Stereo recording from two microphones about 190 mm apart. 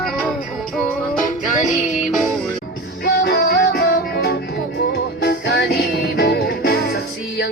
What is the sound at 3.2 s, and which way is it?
Music, 60° left (ahead or behind).